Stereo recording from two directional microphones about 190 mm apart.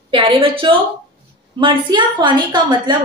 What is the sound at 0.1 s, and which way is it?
A woman's voice, 30° right (ahead or behind).